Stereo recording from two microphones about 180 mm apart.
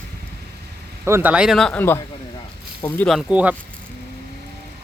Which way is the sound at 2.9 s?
Centre (ahead or behind).